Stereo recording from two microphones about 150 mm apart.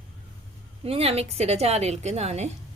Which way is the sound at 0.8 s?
40° right (ahead or behind).